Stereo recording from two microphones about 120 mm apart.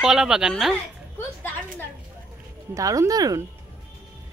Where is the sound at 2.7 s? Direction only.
25° right (ahead or behind).